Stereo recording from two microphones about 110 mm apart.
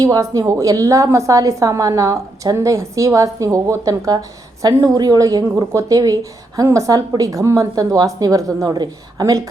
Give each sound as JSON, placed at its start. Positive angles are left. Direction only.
{"t": 0.0, "sound": "a woman's voice", "side_deg": -35}